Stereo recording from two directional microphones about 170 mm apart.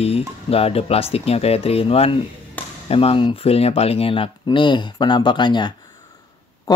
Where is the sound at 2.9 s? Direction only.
35° left (ahead or behind).